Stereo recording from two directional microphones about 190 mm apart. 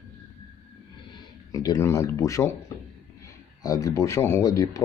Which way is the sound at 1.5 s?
20° left (ahead or behind).